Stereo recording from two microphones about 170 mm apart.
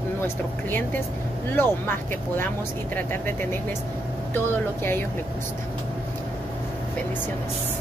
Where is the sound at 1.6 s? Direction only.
10° left (ahead or behind).